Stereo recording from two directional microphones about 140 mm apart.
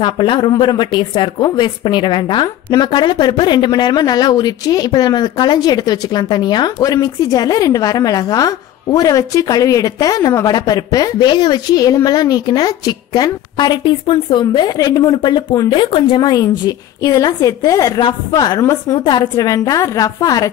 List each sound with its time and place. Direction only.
0.0 s a woman's voice: 35° left (ahead or behind)